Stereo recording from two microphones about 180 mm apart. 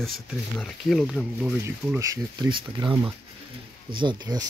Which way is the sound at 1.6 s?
15° right (ahead or behind).